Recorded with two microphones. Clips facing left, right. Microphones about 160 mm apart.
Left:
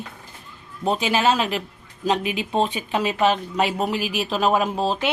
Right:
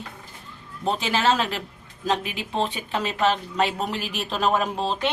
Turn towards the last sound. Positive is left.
turn(degrees=5)  # may be behind; listen again after turning